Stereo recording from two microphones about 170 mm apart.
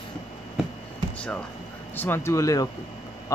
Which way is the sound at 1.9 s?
15° left (ahead or behind).